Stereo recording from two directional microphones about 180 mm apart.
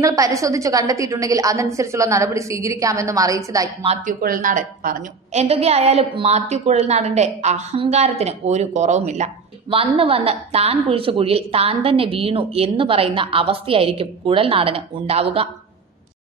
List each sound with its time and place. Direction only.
0.0 s a woman's voice: 20° right (ahead or behind)
3.8 s a woman's voice: 40° right (ahead or behind)